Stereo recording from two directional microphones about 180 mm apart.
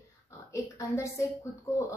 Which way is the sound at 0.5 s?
15° left (ahead or behind).